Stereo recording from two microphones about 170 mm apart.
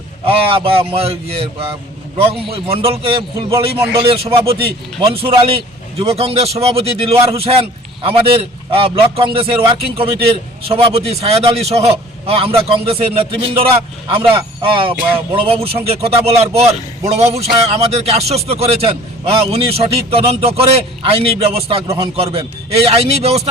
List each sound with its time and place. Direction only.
0.3 s a man's voice: 35° right (ahead or behind)